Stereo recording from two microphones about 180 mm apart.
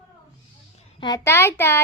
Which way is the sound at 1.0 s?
20° left (ahead or behind).